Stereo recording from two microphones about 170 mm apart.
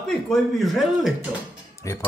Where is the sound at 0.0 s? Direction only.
Centre (ahead or behind).